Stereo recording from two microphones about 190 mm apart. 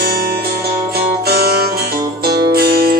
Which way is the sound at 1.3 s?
55° right (ahead or behind).